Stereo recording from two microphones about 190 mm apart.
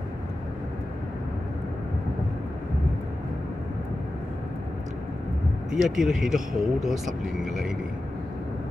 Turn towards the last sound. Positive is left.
turn(degrees=0)  # may be behind; listen again after turning